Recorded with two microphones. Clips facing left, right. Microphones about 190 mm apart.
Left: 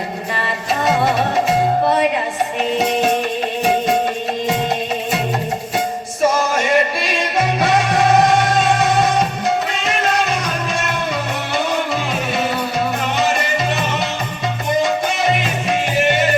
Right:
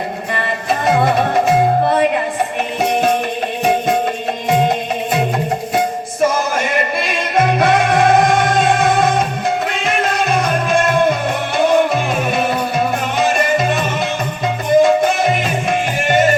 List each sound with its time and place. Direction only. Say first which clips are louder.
0.9 s music: right 3 dB; 55° right (ahead or behind)
6.3 s music: left 2 dB; 55° right (ahead or behind)
13.1 s music: right 5 dB; 50° right (ahead or behind)
14.8 s music: right 7 dB; 50° right (ahead or behind)